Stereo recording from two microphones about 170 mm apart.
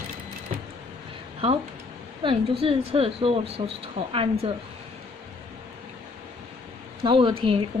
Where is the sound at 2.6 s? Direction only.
35° right (ahead or behind).